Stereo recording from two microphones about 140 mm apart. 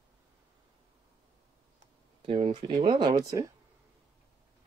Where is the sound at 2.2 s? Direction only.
40° right (ahead or behind); by 3.5 s 25° right (ahead or behind).